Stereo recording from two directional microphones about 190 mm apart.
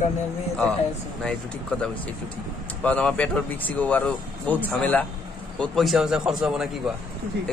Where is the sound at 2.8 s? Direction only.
5° left (ahead or behind).